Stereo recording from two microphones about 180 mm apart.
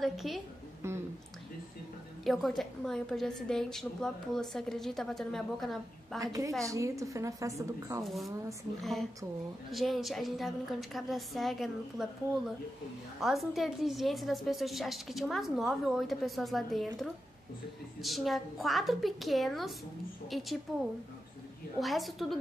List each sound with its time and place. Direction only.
0.0 s a woman's voice: centre (ahead or behind)
0.8 s a sound: 15° right (ahead or behind)
2.2 s a woman's voice: centre (ahead or behind)
6.2 s a woman's voice: 20° right (ahead or behind)
8.0 s a woman's voice: centre (ahead or behind)
9.7 s a woman's voice: centre (ahead or behind)